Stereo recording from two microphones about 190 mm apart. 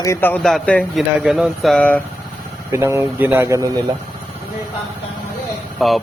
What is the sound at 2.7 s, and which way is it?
Speech, 10° right (ahead or behind).